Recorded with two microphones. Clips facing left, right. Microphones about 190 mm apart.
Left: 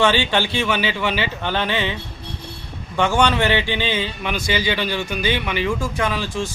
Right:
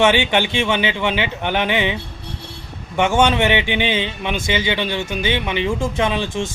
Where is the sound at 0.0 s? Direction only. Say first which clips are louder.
Right 2 dB; 20° right (ahead or behind).